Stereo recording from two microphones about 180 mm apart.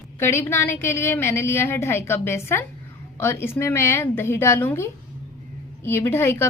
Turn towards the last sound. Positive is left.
turn(degrees=15)  # may be behind; listen again after turning